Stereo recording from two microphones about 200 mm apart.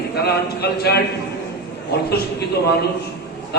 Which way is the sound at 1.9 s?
55° left (ahead or behind).